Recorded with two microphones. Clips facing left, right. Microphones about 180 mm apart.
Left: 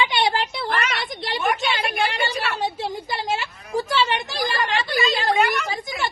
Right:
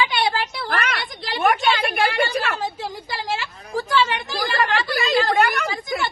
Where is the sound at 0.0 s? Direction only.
20° left (ahead or behind).